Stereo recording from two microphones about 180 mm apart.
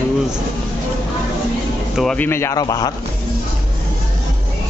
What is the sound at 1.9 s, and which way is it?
Speech, centre (ahead or behind).